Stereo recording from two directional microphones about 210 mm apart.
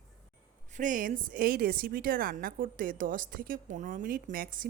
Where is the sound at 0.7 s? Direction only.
40° right (ahead or behind).